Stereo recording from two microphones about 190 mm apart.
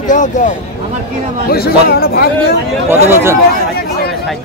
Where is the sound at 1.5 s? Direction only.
50° left (ahead or behind).